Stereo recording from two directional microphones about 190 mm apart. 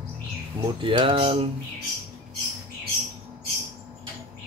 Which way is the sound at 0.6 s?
25° right (ahead or behind).